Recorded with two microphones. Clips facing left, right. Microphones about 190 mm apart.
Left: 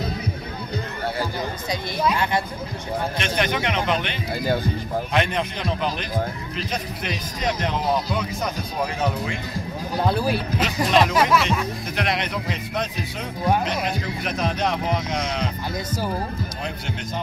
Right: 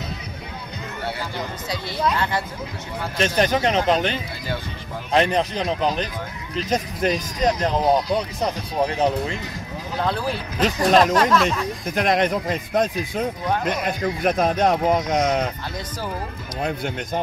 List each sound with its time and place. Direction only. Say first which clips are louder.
3.2 s speech: right 8 dB; 40° right (ahead or behind)
9.9 s speech: left 2 dB; 10° left (ahead or behind)
10.6 s speech: right 4 dB; 40° right (ahead or behind)
11.1 s speech: right 1 dB; 5° left (ahead or behind)
11.9 s speech: right 8 dB; 45° right (ahead or behind)
16.6 s speech: right 4 dB; 50° right (ahead or behind)